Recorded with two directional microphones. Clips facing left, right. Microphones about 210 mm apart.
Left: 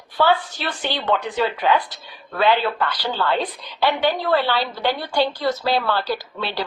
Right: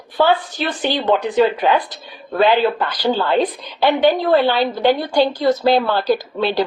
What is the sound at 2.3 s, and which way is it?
A woman's voice, 15° right (ahead or behind).